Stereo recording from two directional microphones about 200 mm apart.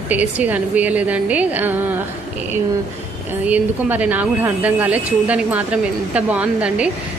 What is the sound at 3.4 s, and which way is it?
A woman's voice, 10° right (ahead or behind).